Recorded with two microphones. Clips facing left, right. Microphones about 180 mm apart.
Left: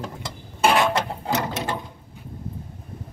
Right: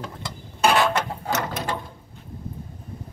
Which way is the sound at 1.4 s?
25° left (ahead or behind).